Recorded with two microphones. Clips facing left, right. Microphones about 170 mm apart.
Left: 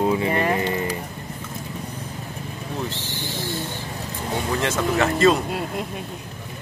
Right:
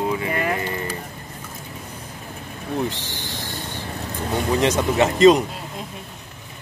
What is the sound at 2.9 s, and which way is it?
Speech, 15° right (ahead or behind).